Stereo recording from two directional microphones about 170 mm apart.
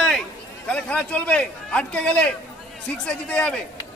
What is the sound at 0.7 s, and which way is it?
A man's voice, 5° left (ahead or behind).